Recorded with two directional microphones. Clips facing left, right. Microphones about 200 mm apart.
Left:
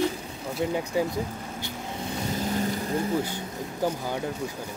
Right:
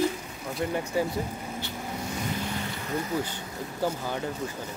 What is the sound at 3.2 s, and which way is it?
Speech, 10° left (ahead or behind).